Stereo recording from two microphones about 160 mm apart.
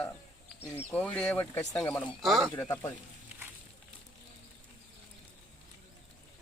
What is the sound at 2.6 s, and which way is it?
Speech, 20° left (ahead or behind).